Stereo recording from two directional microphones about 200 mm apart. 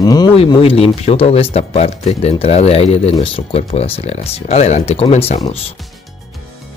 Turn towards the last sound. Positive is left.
turn(degrees=30)  # may be behind; listen again after turning